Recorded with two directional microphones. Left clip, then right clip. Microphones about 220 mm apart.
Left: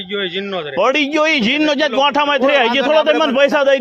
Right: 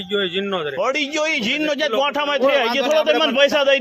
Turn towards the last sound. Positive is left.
turn(degrees=50)  # may be behind; listen again after turning